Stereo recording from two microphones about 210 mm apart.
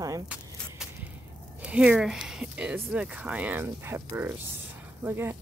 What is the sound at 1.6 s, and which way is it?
Speech, 5° right (ahead or behind).